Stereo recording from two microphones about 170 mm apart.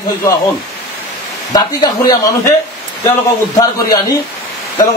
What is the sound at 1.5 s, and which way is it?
A man's voice, 20° left (ahead or behind).